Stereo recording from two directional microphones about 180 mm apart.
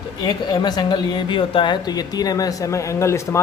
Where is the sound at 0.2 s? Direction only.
20° left (ahead or behind).